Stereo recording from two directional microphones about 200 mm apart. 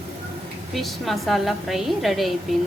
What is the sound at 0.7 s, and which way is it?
A woman's voice, centre (ahead or behind).